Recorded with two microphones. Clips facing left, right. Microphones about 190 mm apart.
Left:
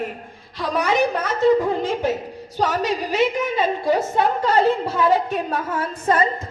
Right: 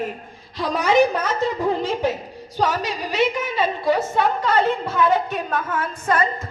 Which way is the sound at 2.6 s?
50° left (ahead or behind).